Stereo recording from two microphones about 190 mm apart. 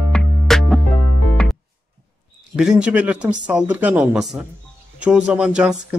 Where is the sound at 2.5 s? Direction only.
5° right (ahead or behind).